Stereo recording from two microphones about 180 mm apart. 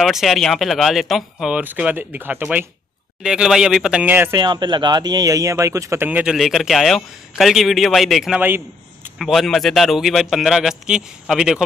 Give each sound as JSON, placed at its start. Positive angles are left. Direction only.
{"t": 0.0, "sound": "speech", "side_deg": 0}
{"t": 4.4, "sound": "a man's voice", "side_deg": -25}
{"t": 9.2, "sound": "speech", "side_deg": 0}